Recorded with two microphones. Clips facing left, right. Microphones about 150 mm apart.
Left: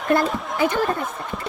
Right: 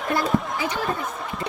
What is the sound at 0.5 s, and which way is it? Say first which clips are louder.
Speech: left 6 dB; 55° left (ahead or behind).